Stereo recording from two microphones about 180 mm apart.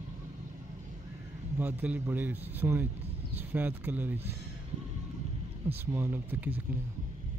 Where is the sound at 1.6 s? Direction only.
10° right (ahead or behind).